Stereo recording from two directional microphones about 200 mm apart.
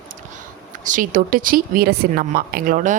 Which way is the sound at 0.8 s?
40° right (ahead or behind).